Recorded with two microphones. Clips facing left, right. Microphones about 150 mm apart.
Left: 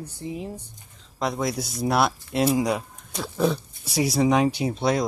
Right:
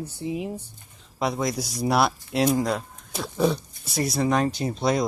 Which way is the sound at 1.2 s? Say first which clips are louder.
Even; centre (ahead or behind).